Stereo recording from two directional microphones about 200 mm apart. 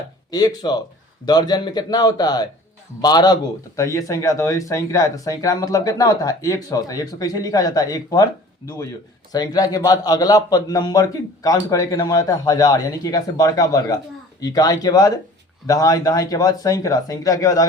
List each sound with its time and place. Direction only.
0.3 s a man's voice: 20° left (ahead or behind)
9.3 s a man's voice: 20° left (ahead or behind)